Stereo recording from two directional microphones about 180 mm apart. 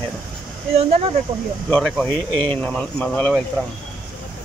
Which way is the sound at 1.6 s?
5° left (ahead or behind).